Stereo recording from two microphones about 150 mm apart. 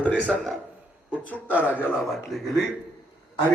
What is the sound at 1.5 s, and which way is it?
Speech, 10° right (ahead or behind).